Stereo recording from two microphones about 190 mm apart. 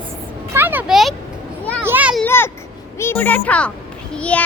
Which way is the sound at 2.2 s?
10° left (ahead or behind).